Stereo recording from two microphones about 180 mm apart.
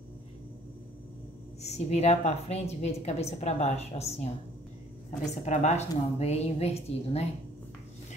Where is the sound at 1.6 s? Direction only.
35° left (ahead or behind).